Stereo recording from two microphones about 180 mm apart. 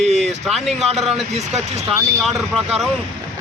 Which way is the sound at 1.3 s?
35° right (ahead or behind).